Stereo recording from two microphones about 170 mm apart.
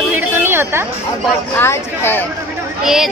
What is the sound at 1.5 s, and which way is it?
Speech, 15° left (ahead or behind).